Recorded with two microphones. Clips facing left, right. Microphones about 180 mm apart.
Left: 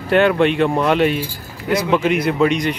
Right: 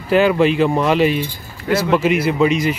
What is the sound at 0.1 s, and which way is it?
Speech, centre (ahead or behind).